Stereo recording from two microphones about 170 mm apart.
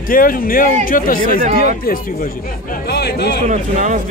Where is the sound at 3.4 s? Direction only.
45° right (ahead or behind).